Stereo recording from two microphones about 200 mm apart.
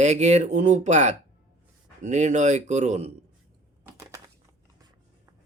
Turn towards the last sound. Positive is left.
turn(degrees=-15)  # may be behind; listen again after turning